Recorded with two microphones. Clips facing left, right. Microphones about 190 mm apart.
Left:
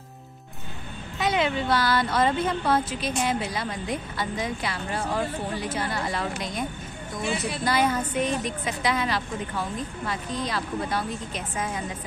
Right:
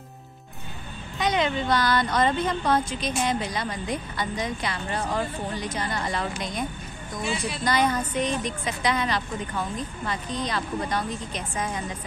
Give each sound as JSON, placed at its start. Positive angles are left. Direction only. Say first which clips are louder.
{"t": 1.1, "sound": "speech", "louder": "even", "side_deg": 5}
{"t": 7.2, "sound": "a woman's voice", "louder": "left 1 dB", "side_deg": 55}
{"t": 7.6, "sound": "speech", "louder": "right 1 dB", "side_deg": 5}